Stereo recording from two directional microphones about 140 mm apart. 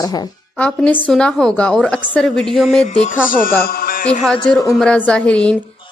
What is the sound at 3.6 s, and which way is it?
Speech, 90° left.